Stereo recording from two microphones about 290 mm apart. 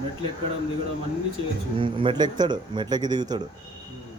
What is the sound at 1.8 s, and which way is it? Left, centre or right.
Speech, centre.